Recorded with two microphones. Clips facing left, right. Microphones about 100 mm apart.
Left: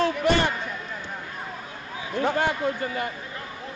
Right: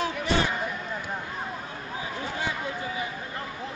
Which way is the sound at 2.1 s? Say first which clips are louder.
Left 10 dB; 60° left (ahead or behind).